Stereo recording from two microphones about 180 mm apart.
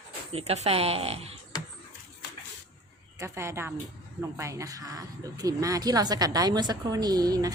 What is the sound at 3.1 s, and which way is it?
A woman's voice, 15° right (ahead or behind).